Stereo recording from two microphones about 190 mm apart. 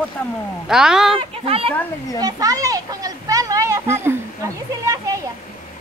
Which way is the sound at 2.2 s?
20° right (ahead or behind).